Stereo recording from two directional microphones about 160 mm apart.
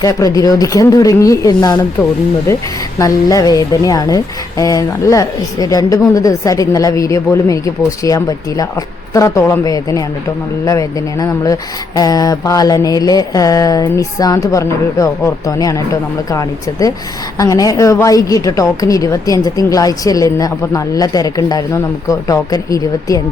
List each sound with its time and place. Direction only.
0.0 s a woman's voice: 20° left (ahead or behind)